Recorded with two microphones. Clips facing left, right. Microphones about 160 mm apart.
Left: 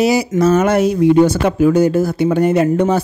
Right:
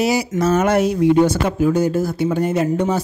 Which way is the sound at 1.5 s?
75° left (ahead or behind).